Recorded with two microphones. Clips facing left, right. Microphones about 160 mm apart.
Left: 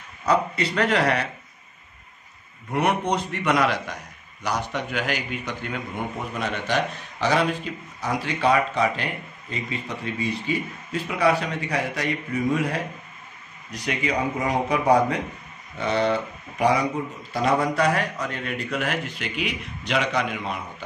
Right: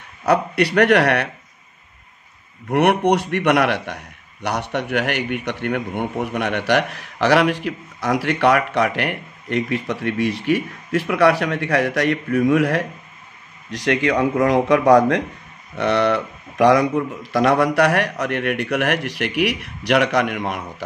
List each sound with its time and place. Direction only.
0.2 s speech: 70° right (ahead or behind)
2.7 s a man's voice: 70° right (ahead or behind)
13.7 s speech: 90° right
14.0 s a man's voice: 75° right (ahead or behind)